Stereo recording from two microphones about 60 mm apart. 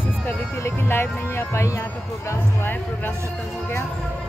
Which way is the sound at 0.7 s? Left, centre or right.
Left.